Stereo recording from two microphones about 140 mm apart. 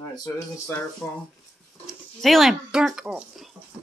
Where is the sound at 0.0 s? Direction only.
25° left (ahead or behind).